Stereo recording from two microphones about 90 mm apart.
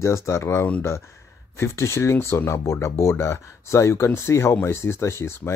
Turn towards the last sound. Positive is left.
turn(degrees=30)  # may be behind; listen again after turning